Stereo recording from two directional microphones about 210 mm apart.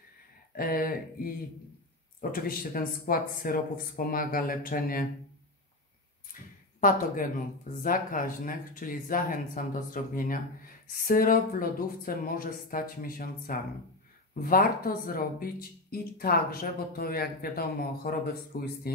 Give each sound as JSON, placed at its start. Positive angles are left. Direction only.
{"t": 0.6, "sound": "speech", "side_deg": 45}
{"t": 2.3, "sound": "speech", "side_deg": 45}
{"t": 7.8, "sound": "speech", "side_deg": 40}